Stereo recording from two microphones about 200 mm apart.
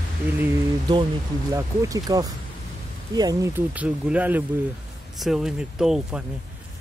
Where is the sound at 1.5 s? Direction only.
15° right (ahead or behind).